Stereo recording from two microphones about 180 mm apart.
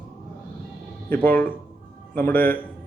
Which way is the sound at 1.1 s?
10° left (ahead or behind).